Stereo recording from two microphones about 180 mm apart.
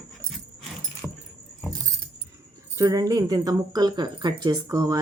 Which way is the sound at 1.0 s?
5° right (ahead or behind).